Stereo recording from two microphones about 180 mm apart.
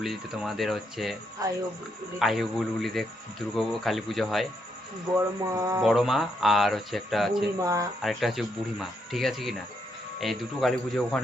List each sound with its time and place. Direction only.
0.0 s speech: centre (ahead or behind)
1.4 s speech: 20° right (ahead or behind)
2.1 s speech: centre (ahead or behind)
5.1 s speech: 15° right (ahead or behind)
5.8 s speech: centre (ahead or behind)
7.6 s speech: 20° right (ahead or behind)
8.0 s speech: centre (ahead or behind)